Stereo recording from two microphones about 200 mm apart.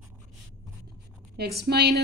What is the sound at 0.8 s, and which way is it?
Writing, 55° right (ahead or behind).